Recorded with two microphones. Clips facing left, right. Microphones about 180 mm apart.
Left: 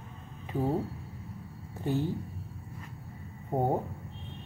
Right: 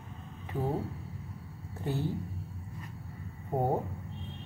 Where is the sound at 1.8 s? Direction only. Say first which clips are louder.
Left 4 dB; 15° left (ahead or behind).